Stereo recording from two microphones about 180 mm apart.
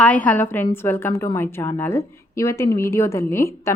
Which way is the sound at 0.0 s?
10° left (ahead or behind).